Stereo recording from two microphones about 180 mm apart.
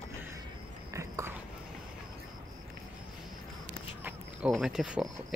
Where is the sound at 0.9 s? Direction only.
15° right (ahead or behind).